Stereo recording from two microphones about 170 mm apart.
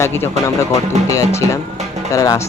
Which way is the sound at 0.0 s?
15° left (ahead or behind).